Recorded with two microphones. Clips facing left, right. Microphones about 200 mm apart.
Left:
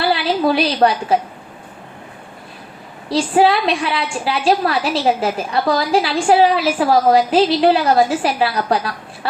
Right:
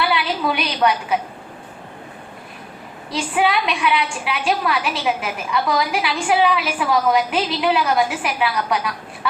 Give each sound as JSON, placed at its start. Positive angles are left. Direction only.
{"t": 0.0, "sound": "a sound", "side_deg": 35}
{"t": 0.8, "sound": "a woman's voice", "side_deg": 50}
{"t": 3.1, "sound": "a woman's voice", "side_deg": 30}